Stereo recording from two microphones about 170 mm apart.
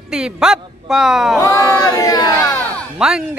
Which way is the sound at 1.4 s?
20° left (ahead or behind).